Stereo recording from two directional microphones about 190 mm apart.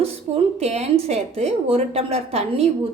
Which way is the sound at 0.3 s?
35° right (ahead or behind).